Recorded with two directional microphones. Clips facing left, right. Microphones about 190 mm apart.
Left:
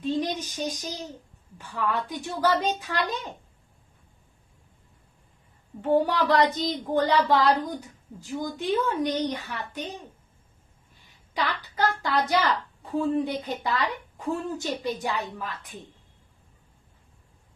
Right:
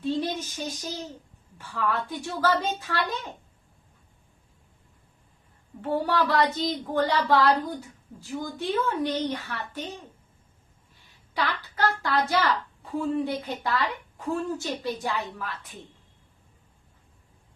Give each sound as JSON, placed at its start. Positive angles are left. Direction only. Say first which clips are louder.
{"t": 0.0, "sound": "child singing", "louder": "even", "side_deg": 15}
{"t": 1.5, "sound": "a woman's voice", "louder": "even", "side_deg": 15}
{"t": 5.8, "sound": "a woman's voice", "louder": "left 3 dB", "side_deg": 15}
{"t": 11.3, "sound": "a woman's voice", "louder": "even", "side_deg": 15}